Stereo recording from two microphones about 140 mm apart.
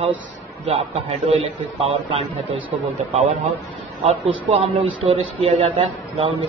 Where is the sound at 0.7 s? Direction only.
40° right (ahead or behind).